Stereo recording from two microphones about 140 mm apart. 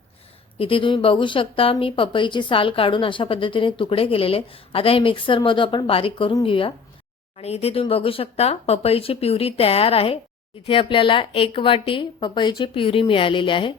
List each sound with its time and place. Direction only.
0.6 s speech: 40° left (ahead or behind)